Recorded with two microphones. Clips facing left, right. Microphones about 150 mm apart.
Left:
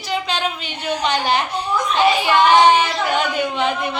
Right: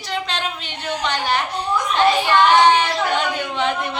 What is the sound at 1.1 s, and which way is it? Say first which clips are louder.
A woman's voice: left 2 dB; 15° left (ahead or behind).